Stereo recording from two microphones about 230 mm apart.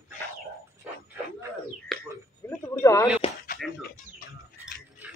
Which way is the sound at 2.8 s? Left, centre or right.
Centre.